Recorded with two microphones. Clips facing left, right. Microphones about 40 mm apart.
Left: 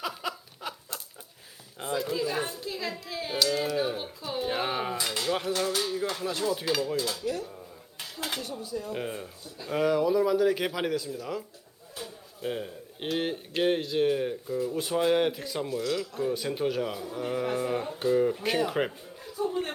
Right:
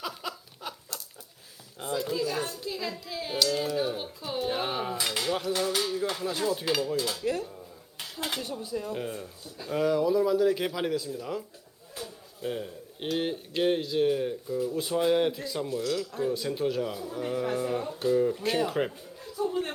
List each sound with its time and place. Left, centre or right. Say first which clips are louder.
0.0 s a sound: left 2 dB; centre
0.9 s chicken: left 1 dB; left
1.8 s a man's voice: even; centre
2.2 s speech: left 1 dB; left
2.6 s a man's voice: even; centre
4.4 s a sound: even; centre
5.3 s a man's voice: left 2 dB; centre
5.5 s music: even; centre
7.9 s dishes: right 1 dB; centre
8.6 s speech: right 1 dB; right
8.9 s a man's voice: even; centre
18.7 s chuckle: even; centre